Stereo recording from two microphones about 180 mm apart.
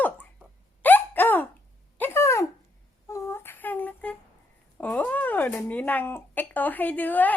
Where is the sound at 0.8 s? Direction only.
10° left (ahead or behind).